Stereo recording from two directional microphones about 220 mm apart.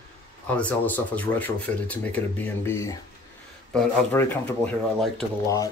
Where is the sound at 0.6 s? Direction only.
5° left (ahead or behind).